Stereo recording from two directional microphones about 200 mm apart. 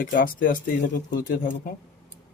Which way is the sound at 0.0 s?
45° left (ahead or behind).